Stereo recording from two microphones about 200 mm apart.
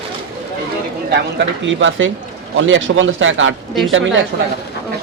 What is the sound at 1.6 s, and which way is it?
A man's voice, 70° right (ahead or behind).